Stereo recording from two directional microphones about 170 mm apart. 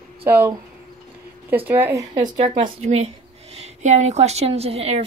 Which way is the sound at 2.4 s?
35° right (ahead or behind).